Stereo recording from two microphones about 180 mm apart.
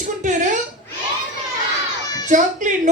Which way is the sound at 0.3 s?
45° right (ahead or behind).